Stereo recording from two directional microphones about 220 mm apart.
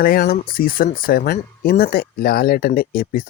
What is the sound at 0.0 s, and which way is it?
Speech, 40° left (ahead or behind).